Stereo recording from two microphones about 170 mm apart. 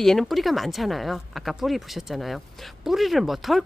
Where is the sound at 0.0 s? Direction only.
Centre (ahead or behind).